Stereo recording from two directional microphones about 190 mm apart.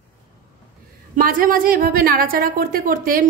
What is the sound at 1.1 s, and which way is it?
A woman's voice, 45° right (ahead or behind).